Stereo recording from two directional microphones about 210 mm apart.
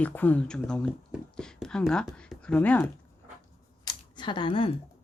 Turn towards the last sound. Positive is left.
turn(degrees=25)  # may be behind; listen again after turning